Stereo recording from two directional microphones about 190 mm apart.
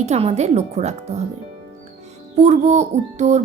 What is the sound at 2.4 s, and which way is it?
Speech, 35° right (ahead or behind).